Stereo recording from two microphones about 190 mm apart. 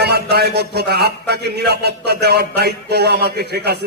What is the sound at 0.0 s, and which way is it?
A man's voice, 60° right (ahead or behind).